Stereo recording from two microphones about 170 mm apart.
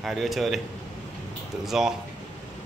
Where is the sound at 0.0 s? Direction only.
Centre (ahead or behind).